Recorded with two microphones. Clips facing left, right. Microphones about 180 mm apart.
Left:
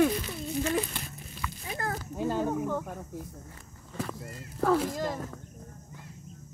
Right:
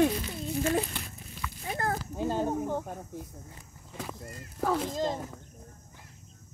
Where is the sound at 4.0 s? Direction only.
10° right (ahead or behind).